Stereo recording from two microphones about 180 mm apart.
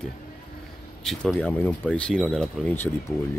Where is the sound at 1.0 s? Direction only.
Centre (ahead or behind).